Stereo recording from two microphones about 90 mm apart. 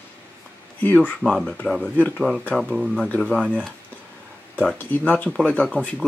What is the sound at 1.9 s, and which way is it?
Speech, 15° left (ahead or behind).